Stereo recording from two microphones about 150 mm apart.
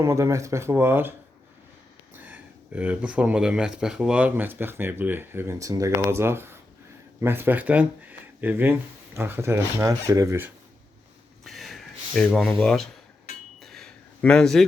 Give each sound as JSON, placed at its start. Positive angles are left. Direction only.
{"t": 0.0, "sound": "speech", "side_deg": -20}
{"t": 2.1, "sound": "speech", "side_deg": -10}
{"t": 11.4, "sound": "a sound", "side_deg": 0}